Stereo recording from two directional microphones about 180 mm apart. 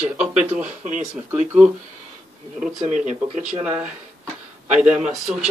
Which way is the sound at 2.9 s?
45° right (ahead or behind).